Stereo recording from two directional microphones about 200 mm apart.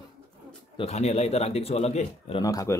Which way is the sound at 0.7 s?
35° left (ahead or behind).